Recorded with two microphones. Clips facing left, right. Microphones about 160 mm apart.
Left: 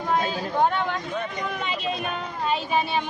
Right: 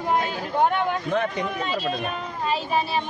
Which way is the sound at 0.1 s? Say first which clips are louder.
Even; 15° right (ahead or behind).